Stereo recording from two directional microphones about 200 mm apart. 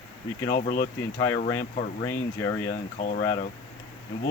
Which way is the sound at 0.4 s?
40° left (ahead or behind).